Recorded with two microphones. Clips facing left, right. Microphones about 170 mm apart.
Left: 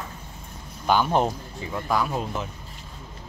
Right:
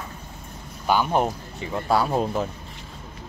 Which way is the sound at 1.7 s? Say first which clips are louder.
Right 4 dB; 30° right (ahead or behind).